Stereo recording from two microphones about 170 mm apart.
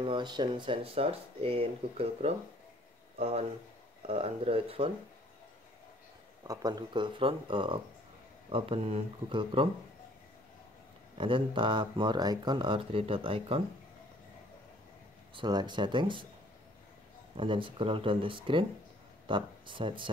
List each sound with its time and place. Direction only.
0.0 s speech: 25° right (ahead or behind)
6.4 s speech: 20° right (ahead or behind)
11.1 s speech: 30° right (ahead or behind)
15.3 s speech: 25° right (ahead or behind)
17.4 s speech: 30° right (ahead or behind)